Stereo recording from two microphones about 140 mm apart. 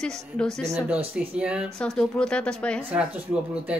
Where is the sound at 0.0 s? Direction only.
5° left (ahead or behind).